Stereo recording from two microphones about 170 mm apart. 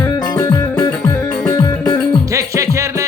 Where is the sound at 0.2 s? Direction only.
25° left (ahead or behind).